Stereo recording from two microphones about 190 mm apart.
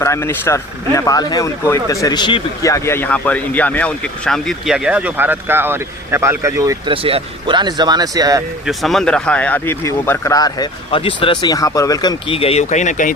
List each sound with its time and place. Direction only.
0.0 s speech: 15° left (ahead or behind); by 6.7 s 15° right (ahead or behind)
6.8 s speech: 30° right (ahead or behind)
8.6 s speech: centre (ahead or behind); by 12.1 s 20° left (ahead or behind)
12.3 s speech: 30° left (ahead or behind)